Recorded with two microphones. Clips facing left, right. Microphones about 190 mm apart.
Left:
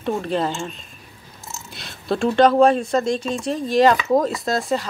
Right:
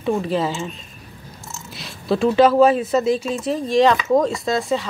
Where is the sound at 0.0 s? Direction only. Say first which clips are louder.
Right 2 dB; 5° right (ahead or behind).